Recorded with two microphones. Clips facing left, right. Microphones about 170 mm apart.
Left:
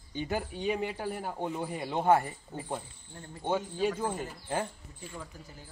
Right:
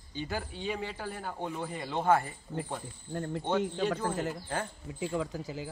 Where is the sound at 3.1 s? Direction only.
75° right (ahead or behind).